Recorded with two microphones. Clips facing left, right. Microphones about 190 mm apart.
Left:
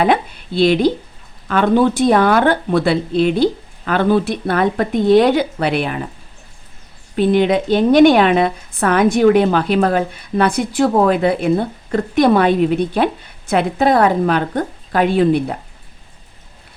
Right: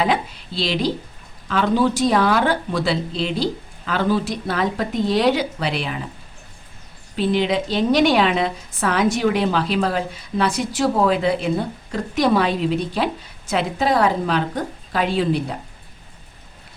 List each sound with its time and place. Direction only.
0.0 s a woman's voice: 55° left (ahead or behind)
7.2 s a woman's voice: 55° left (ahead or behind)